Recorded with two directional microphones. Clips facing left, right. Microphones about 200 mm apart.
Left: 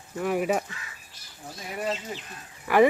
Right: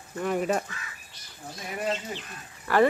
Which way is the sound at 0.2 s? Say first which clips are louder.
Left 1 dB; 5° left (ahead or behind).